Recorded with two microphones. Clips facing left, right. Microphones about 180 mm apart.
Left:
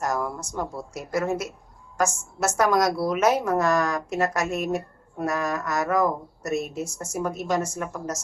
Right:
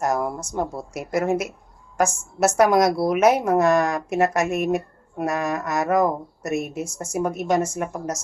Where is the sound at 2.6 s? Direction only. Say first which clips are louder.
Right 4 dB; 20° right (ahead or behind).